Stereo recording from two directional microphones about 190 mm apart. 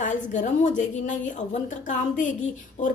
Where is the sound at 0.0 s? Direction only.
40° left (ahead or behind).